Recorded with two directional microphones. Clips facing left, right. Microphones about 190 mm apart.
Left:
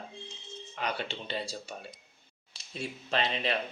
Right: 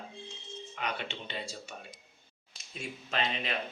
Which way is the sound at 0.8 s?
35° left (ahead or behind).